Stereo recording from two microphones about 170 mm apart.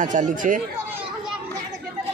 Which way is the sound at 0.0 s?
50° right (ahead or behind).